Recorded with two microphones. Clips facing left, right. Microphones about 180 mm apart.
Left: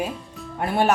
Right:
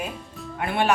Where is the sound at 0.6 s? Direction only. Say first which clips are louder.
Left 2 dB; 40° left (ahead or behind).